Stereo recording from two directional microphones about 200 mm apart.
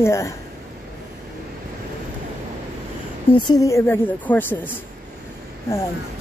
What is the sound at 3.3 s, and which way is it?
Speech, 20° left (ahead or behind).